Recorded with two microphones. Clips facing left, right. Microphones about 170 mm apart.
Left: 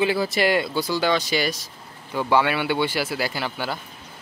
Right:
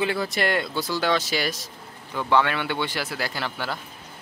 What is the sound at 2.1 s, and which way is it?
Speech, 10° left (ahead or behind).